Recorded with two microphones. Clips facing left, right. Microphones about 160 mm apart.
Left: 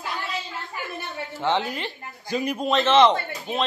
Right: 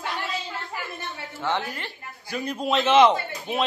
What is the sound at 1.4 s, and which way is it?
Speech, 20° left (ahead or behind).